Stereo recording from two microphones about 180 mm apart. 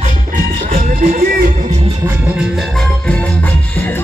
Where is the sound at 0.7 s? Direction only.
45° right (ahead or behind).